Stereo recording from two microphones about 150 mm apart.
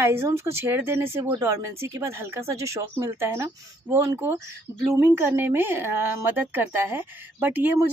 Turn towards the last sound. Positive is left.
turn(degrees=-10)  # may be behind; listen again after turning